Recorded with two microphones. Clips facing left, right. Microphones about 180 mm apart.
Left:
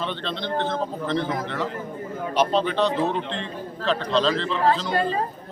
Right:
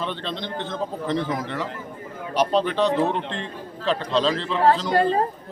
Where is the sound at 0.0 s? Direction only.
10° right (ahead or behind).